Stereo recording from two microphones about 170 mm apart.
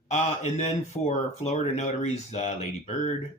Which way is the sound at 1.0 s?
40° left (ahead or behind).